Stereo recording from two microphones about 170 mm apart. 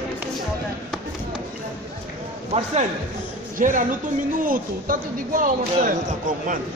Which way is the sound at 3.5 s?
50° right (ahead or behind).